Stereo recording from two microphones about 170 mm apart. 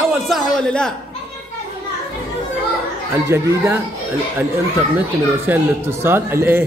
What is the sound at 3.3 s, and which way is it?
Speech, 15° right (ahead or behind).